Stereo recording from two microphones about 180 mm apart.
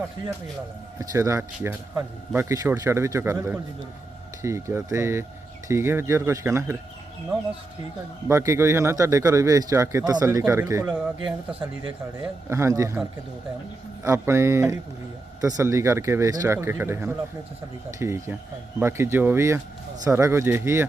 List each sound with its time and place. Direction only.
0.9 s speech: 15° right (ahead or behind)
8.3 s speech: 15° right (ahead or behind)
12.5 s speech: 15° right (ahead or behind)